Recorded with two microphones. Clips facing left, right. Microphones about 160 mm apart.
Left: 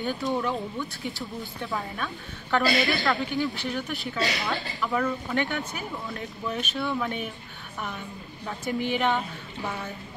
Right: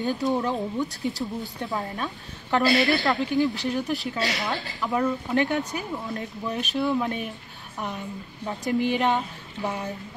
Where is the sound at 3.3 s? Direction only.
35° right (ahead or behind).